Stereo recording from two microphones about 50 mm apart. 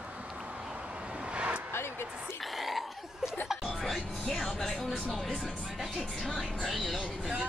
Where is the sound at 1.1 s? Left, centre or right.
Right.